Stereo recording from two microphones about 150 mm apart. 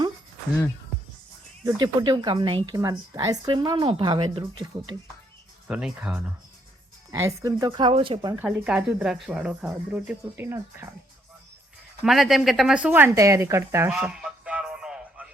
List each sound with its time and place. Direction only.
1.6 s speech: 30° right (ahead or behind)
5.6 s speech: 10° right (ahead or behind)
7.1 s speech: 20° right (ahead or behind)
8.4 s speech: 10° right (ahead or behind)
12.0 s speech: centre (ahead or behind); by 13.9 s 20° right (ahead or behind)
13.9 s a sound: 5° right (ahead or behind)